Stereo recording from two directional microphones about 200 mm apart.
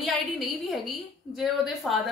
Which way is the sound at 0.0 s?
Centre (ahead or behind).